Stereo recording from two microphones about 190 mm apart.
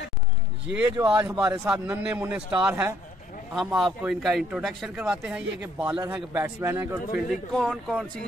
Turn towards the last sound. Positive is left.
turn(degrees=0)  # may be behind; listen again after turning